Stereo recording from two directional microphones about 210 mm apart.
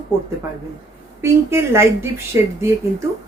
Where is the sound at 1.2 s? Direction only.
10° right (ahead or behind).